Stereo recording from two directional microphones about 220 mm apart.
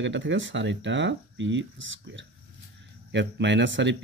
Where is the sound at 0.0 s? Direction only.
55° right (ahead or behind).